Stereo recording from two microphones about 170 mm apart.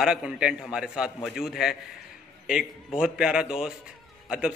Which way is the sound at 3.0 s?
5° right (ahead or behind).